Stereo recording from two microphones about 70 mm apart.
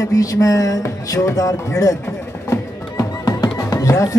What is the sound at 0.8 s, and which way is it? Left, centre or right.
Music, left.